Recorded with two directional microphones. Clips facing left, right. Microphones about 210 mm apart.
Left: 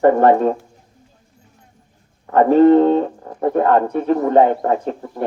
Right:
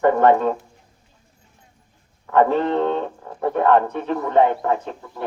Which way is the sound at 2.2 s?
35° left (ahead or behind).